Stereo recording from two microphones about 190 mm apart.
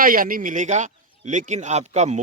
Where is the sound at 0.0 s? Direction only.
45° right (ahead or behind).